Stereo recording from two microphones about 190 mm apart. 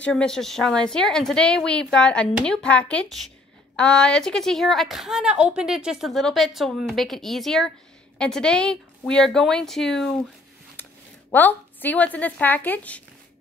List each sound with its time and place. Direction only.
0.0 s a woman's voice: 5° left (ahead or behind)